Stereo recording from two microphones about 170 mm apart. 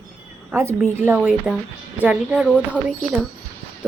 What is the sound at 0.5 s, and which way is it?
A woman's voice, 15° right (ahead or behind).